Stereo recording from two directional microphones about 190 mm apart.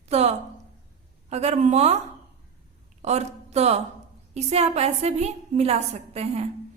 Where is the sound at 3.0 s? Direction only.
35° right (ahead or behind).